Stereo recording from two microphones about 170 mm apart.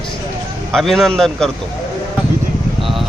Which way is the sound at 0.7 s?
Centre (ahead or behind).